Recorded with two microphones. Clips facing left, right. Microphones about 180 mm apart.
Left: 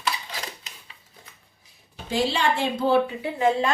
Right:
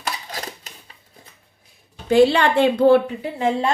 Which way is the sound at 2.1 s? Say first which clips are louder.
Right 9 dB; 60° right (ahead or behind).